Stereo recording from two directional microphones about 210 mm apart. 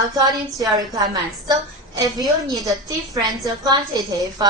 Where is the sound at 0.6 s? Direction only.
15° right (ahead or behind).